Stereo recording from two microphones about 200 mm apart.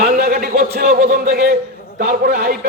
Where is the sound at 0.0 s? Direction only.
50° right (ahead or behind).